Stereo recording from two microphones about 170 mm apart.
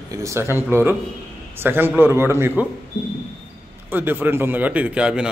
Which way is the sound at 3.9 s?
10° right (ahead or behind).